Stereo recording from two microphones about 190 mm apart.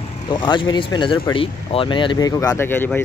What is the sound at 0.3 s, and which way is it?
Speech, 25° left (ahead or behind).